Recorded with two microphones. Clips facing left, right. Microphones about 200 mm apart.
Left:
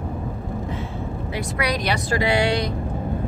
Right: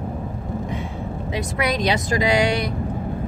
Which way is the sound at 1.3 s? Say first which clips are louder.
Right 2 dB; 20° right (ahead or behind).